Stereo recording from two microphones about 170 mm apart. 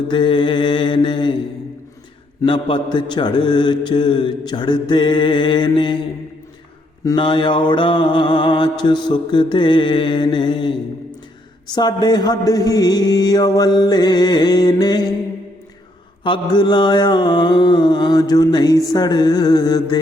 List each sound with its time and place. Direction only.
0.1 s mantra: 30° left (ahead or behind)
2.4 s mantra: 30° left (ahead or behind)
7.0 s mantra: 25° left (ahead or behind)
16.2 s mantra: 25° left (ahead or behind)